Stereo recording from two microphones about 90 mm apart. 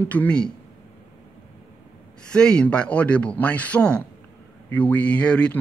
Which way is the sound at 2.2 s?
10° left (ahead or behind).